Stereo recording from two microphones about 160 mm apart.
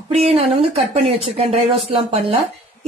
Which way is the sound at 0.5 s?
40° right (ahead or behind).